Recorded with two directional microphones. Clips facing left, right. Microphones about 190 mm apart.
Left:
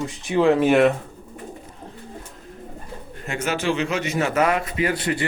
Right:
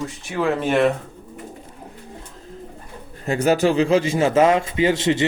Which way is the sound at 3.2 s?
35° right (ahead or behind).